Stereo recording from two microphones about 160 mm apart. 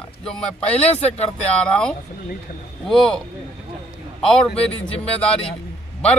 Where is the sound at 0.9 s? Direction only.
40° left (ahead or behind).